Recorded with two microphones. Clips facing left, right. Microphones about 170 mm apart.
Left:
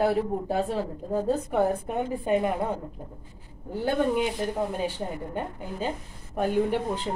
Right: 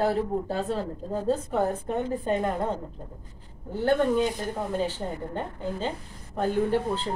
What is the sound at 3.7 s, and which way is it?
Speech, 10° left (ahead or behind).